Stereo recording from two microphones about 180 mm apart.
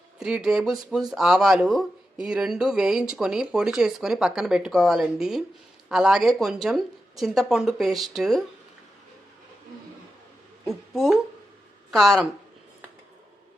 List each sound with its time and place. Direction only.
0.2 s speech: 5° right (ahead or behind)
10.7 s a woman's voice: centre (ahead or behind)